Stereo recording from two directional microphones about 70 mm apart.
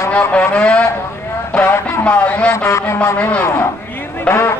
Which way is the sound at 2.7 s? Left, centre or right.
Left.